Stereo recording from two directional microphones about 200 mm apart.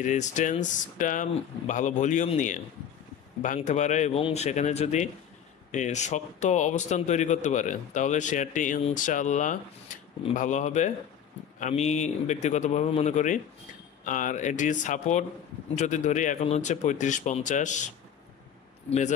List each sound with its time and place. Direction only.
0.0 s speech: 40° left (ahead or behind)